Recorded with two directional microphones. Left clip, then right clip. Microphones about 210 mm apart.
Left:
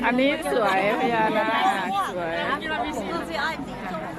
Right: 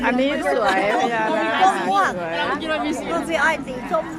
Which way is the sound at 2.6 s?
60° right (ahead or behind).